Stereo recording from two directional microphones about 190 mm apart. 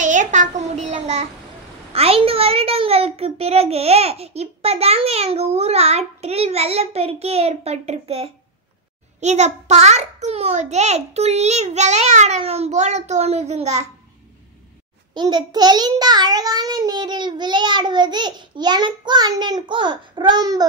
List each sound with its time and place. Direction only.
0.0 s child singing: 40° right (ahead or behind)
1.9 s a child's voice: 30° right (ahead or behind)
15.1 s a child's voice: 20° right (ahead or behind)